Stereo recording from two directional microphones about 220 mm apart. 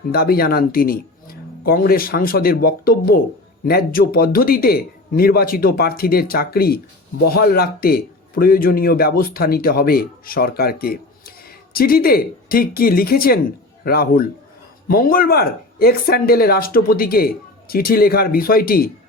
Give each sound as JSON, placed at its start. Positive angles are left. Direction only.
{"t": 0.1, "sound": "speech", "side_deg": 45}